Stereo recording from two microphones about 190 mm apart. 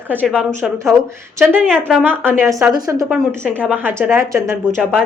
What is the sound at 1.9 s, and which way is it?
A woman's voice, 5° right (ahead or behind).